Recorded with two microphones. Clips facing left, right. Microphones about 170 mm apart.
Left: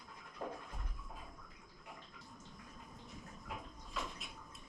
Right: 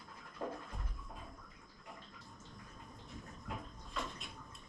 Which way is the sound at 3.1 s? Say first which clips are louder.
Right 3 dB; centre (ahead or behind).